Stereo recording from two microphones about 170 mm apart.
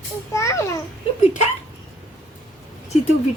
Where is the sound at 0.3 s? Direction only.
15° left (ahead or behind).